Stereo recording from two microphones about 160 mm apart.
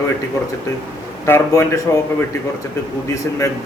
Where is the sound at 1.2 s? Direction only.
15° left (ahead or behind).